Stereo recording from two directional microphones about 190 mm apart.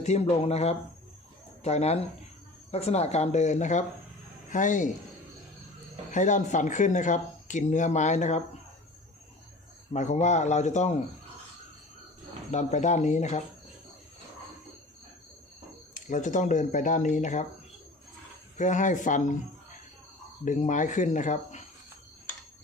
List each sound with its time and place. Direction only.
0.0 s speech: 35° left (ahead or behind)
6.1 s speech: 40° left (ahead or behind)
9.9 s speech: 40° left (ahead or behind)
12.5 s speech: 40° left (ahead or behind)
16.0 s speech: 40° left (ahead or behind)
18.5 s speech: 40° left (ahead or behind)